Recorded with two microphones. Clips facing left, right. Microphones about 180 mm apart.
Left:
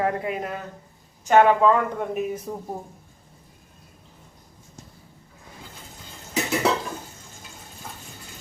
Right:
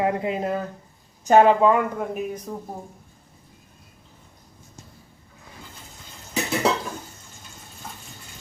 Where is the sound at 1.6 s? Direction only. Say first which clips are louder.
Right 1 dB; 15° right (ahead or behind).